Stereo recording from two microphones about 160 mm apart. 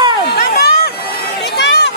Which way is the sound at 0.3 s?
75° left (ahead or behind).